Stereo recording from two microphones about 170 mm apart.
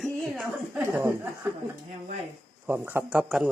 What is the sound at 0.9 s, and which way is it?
Speech, 15° right (ahead or behind).